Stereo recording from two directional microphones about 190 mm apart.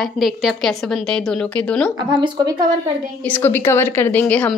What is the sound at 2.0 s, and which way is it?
Speech, 25° right (ahead or behind).